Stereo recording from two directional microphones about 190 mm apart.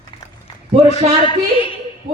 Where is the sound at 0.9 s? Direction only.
25° left (ahead or behind).